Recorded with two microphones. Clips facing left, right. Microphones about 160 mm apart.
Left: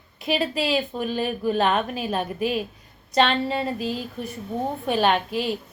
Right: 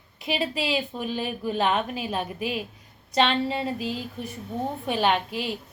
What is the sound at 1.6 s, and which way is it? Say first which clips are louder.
Speech: left 2 dB; 50° left (ahead or behind).